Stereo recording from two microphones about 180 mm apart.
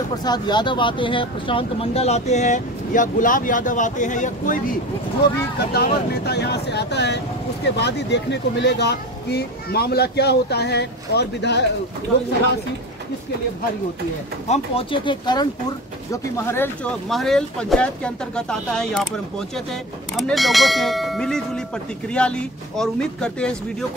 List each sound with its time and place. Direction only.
0.2 s speech: 25° left (ahead or behind); by 4.7 s 45° left (ahead or behind)
5.7 s speech: 65° left (ahead or behind)
14.5 s speech: 30° left (ahead or behind)
16.1 s speech: 15° left (ahead or behind)
17.1 s speech: centre (ahead or behind)